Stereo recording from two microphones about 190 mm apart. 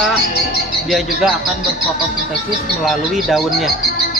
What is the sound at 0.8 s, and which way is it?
Speech, centre (ahead or behind).